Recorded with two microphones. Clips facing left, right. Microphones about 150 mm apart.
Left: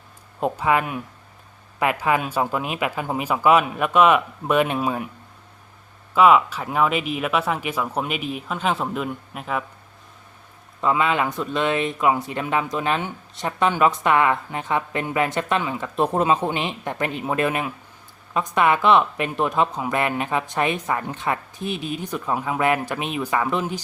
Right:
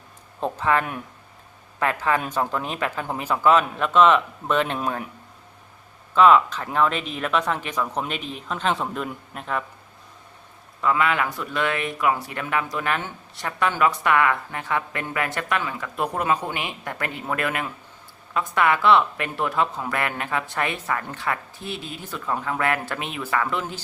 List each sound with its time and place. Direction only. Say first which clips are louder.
0.3 s speech: left 2 dB; 10° left (ahead or behind)
6.1 s speech: even; 10° left (ahead or behind)
10.8 s speech: left 1 dB; 25° left (ahead or behind)